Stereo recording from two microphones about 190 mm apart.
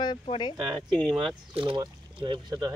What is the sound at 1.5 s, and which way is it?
Speech, 30° right (ahead or behind).